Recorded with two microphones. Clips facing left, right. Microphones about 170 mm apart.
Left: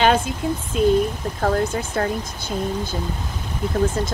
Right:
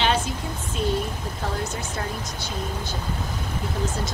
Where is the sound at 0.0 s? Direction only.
50° left (ahead or behind).